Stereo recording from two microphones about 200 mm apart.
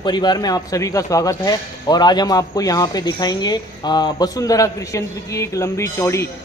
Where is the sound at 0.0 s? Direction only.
20° left (ahead or behind).